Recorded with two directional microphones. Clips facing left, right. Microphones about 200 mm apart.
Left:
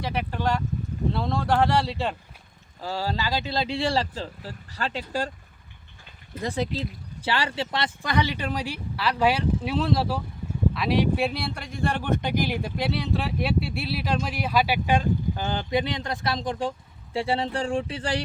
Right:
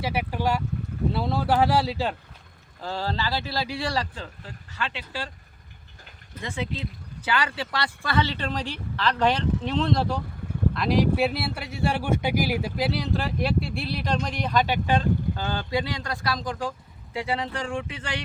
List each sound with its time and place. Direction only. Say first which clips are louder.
0.0 s speech: right 1 dB; 5° right (ahead or behind)
2.8 s speech: left 1 dB; 10° left (ahead or behind); by 5.3 s 40° left (ahead or behind)
6.4 s speech: left 4 dB; 35° left (ahead or behind)